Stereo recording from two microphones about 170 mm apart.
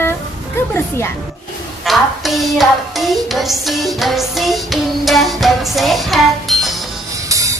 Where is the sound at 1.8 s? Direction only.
Centre (ahead or behind).